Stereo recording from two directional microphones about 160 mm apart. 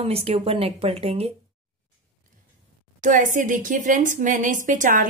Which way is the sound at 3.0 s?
55° right (ahead or behind).